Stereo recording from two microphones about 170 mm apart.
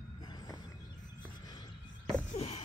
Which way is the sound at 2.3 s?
40° left (ahead or behind).